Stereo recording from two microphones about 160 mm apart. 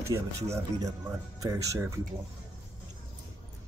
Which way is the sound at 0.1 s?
20° right (ahead or behind).